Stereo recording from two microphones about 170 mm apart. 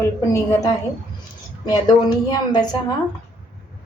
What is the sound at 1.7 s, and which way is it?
Speech, 25° left (ahead or behind).